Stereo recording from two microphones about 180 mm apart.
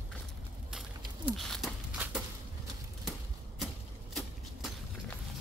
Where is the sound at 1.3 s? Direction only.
Centre (ahead or behind).